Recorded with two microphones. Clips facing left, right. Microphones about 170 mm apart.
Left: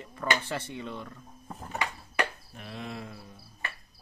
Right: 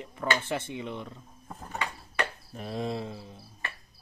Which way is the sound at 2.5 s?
35° right (ahead or behind).